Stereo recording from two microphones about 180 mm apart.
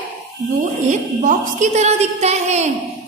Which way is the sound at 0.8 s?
40° right (ahead or behind).